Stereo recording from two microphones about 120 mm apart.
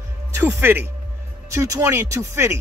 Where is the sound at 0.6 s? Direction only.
20° right (ahead or behind).